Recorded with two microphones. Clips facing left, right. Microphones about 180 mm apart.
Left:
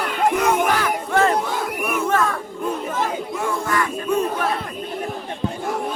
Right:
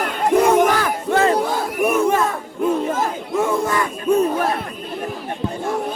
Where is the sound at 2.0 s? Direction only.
15° right (ahead or behind).